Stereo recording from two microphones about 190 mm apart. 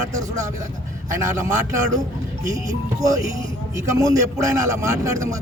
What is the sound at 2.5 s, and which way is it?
A man's voice, 15° right (ahead or behind).